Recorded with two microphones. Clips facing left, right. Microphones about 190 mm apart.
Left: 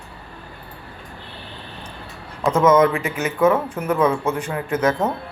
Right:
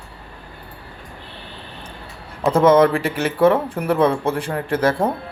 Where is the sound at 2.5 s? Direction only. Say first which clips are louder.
Right 2 dB; 35° right (ahead or behind).